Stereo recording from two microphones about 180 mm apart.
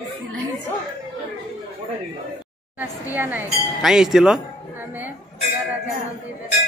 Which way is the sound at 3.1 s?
10° right (ahead or behind).